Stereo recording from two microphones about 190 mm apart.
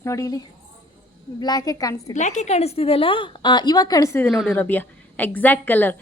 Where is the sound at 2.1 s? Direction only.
40° left (ahead or behind).